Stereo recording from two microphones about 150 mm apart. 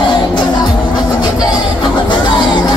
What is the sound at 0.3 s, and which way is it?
Music, 30° left (ahead or behind).